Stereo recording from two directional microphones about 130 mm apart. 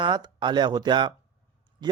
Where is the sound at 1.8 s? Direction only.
35° right (ahead or behind).